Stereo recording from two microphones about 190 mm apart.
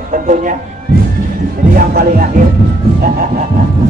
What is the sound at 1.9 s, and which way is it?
Music, 55° right (ahead or behind).